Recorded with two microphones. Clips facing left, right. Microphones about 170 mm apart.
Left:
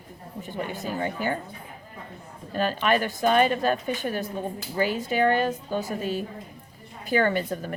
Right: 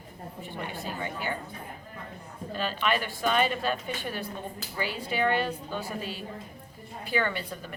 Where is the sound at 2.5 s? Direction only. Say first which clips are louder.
Left 5 dB; 45° left (ahead or behind).